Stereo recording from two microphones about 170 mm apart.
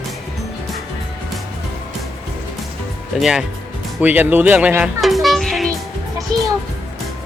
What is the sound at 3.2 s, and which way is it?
Speech, 5° right (ahead or behind).